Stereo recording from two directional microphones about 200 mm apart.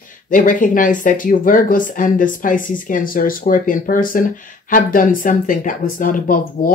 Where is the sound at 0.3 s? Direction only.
40° left (ahead or behind).